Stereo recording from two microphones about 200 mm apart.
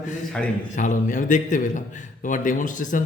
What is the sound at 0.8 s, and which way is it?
Speech, 40° left (ahead or behind).